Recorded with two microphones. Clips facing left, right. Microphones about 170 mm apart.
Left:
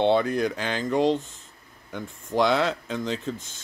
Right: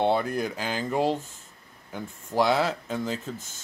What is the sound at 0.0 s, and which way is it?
Speech, 5° right (ahead or behind).